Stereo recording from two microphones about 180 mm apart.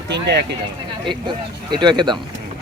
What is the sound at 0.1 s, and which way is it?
Speech, 65° right (ahead or behind).